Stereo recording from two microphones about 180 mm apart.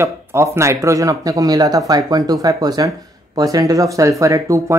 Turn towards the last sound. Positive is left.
turn(degrees=-15)  # may be behind; listen again after turning